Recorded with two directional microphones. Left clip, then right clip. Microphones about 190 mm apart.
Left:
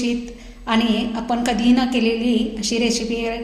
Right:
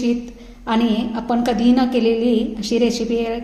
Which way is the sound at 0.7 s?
45° right (ahead or behind).